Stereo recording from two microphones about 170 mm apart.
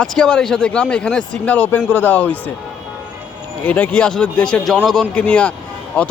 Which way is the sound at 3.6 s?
10° left (ahead or behind).